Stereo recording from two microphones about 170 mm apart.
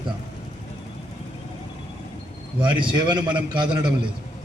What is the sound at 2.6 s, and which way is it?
A man's voice, 30° right (ahead or behind).